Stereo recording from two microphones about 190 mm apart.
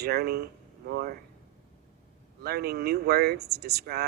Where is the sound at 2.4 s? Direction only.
55° right (ahead or behind).